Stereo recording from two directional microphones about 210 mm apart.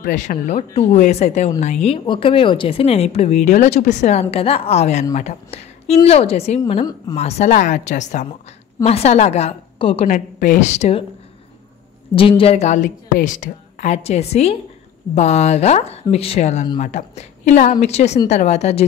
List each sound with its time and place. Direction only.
0.0 s a woman's voice: 40° left (ahead or behind)
10.0 s a woman's voice: 40° left (ahead or behind)
12.2 s a woman's voice: 25° left (ahead or behind)